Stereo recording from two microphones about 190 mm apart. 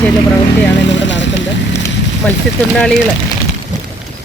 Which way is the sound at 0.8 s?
70° left (ahead or behind).